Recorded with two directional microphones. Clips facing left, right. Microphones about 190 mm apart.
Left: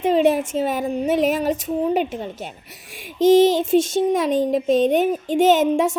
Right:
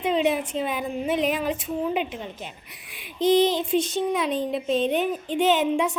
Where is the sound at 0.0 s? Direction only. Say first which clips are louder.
Left 6 dB; 45° left (ahead or behind).